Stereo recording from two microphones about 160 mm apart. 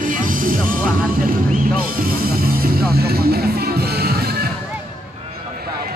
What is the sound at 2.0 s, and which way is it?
Music, 70° right (ahead or behind).